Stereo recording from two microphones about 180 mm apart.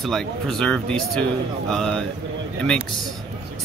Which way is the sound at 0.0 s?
Centre (ahead or behind).